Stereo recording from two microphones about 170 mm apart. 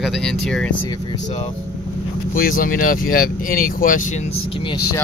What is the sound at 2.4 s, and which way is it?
Speech, 55° left (ahead or behind).